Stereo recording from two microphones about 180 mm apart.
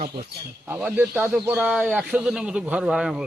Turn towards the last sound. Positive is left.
turn(degrees=-5)  # may be behind; listen again after turning